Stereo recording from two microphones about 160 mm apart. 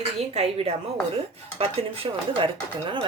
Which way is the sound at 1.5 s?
35° right (ahead or behind).